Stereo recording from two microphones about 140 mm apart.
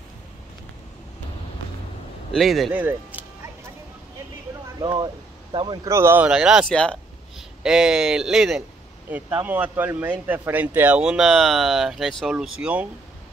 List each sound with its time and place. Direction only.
2.3 s speech: centre (ahead or behind)
2.7 s speech: 10° right (ahead or behind)
4.8 s speech: 35° right (ahead or behind)
5.9 s speech: 20° right (ahead or behind); by 7.4 s 5° left (ahead or behind)
7.6 s speech: 5° right (ahead or behind)